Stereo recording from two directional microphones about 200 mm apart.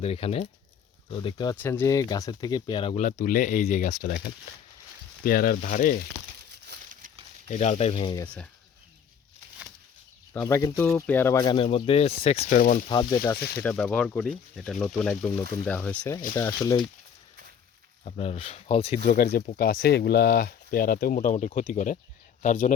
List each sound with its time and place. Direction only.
0.0 s speech: 30° left (ahead or behind)
1.6 s speech: 10° left (ahead or behind)
2.9 s speech: 40° left (ahead or behind)
7.4 s speech: 35° left (ahead or behind)
10.4 s speech: 15° left (ahead or behind)
11.5 s speech: 30° left (ahead or behind)
12.5 s speech: 45° left (ahead or behind)
12.9 s speech: 20° left (ahead or behind)
13.6 s speech: 5° left (ahead or behind)
16.3 s speech: 20° left (ahead or behind)
18.0 s speech: 30° left (ahead or behind)
19.0 s speech: 45° left (ahead or behind)